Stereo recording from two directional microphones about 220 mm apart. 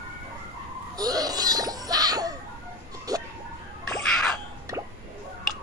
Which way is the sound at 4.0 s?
Centre (ahead or behind).